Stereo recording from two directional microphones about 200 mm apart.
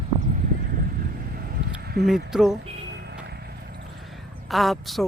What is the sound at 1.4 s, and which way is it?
Vehicle, 50° right (ahead or behind).